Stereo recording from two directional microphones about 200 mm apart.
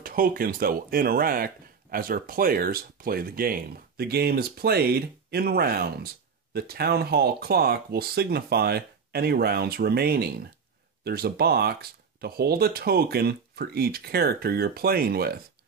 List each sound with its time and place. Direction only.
0.0 s speech: 45° right (ahead or behind)